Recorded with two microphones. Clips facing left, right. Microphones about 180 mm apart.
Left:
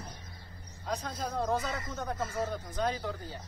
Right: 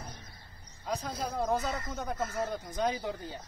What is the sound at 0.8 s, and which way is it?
A man's voice, centre (ahead or behind).